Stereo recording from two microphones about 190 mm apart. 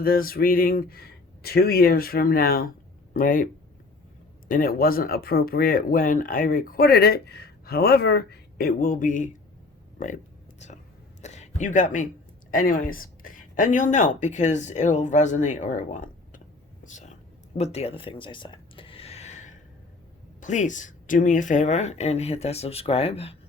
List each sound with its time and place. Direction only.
0.0 s speech: 50° left (ahead or behind)
10.6 s speech: 35° left (ahead or behind)
11.2 s a sound: 35° left (ahead or behind)
12.5 s speech: 45° left (ahead or behind)
16.8 s a sound: 40° left (ahead or behind)
20.4 s speech: 40° left (ahead or behind)